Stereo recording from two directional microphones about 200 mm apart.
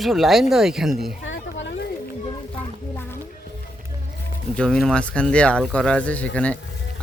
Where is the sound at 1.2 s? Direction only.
70° left (ahead or behind).